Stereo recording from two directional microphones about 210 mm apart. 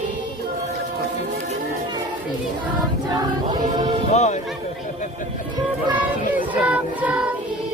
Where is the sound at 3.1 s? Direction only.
20° right (ahead or behind).